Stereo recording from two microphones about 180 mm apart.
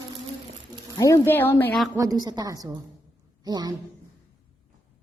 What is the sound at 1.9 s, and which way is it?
A woman's voice, 20° right (ahead or behind).